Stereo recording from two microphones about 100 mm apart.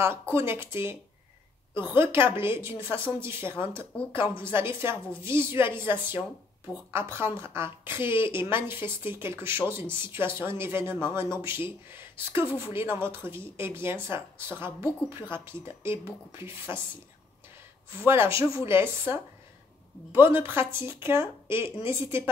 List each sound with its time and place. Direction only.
0.3 s speech: 25° right (ahead or behind)
18.0 s speech: 25° right (ahead or behind)